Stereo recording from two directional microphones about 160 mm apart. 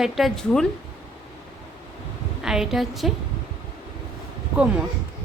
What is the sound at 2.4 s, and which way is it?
Speech, 5° right (ahead or behind).